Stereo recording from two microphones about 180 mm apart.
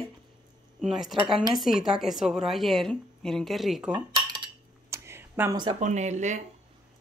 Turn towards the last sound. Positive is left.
turn(degrees=-40)  # may be behind; listen again after turning